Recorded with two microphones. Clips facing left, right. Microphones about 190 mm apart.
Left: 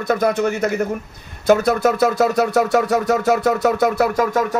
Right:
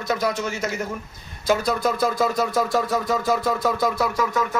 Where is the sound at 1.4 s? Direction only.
60° left (ahead or behind).